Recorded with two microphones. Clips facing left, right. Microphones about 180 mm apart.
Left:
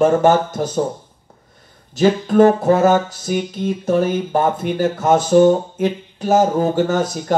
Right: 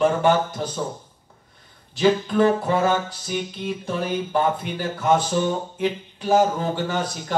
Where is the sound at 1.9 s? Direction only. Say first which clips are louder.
Left 5 dB; 45° left (ahead or behind).